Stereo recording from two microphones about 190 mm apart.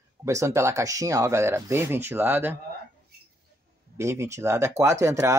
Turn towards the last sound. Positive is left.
turn(degrees=-15)  # may be behind; listen again after turning